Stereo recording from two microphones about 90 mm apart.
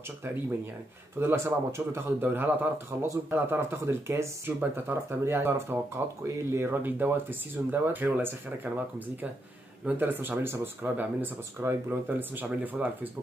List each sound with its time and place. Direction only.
1.2 s speech: 30° right (ahead or behind)